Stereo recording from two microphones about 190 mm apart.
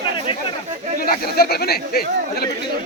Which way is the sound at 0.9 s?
55° left (ahead or behind).